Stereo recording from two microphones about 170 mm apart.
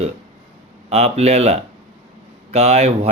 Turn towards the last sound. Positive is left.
turn(degrees=-40)  # may be behind; listen again after turning